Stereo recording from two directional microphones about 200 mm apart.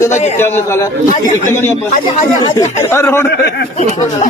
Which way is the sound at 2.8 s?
10° left (ahead or behind).